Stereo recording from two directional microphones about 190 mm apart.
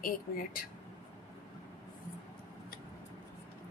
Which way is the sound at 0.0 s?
45° left (ahead or behind).